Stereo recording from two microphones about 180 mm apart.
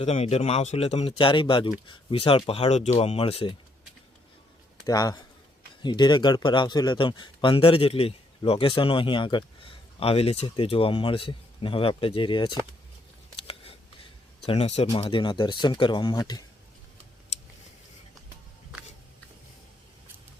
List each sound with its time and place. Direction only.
0.0 s speech: 35° left (ahead or behind)
4.9 s speech: 20° left (ahead or behind)
13.3 s a sound: 30° left (ahead or behind)
14.4 s speech: 35° left (ahead or behind)